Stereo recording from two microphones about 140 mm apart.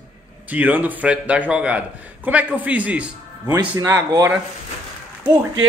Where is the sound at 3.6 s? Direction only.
20° right (ahead or behind).